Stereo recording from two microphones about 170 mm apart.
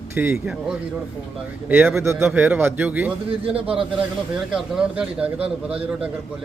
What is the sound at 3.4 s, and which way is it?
Speech, 35° right (ahead or behind).